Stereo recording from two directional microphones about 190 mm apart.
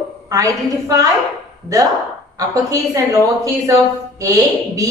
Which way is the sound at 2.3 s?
20° right (ahead or behind).